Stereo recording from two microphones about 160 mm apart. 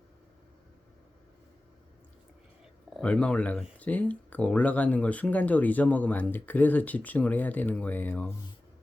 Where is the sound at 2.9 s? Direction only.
5° left (ahead or behind).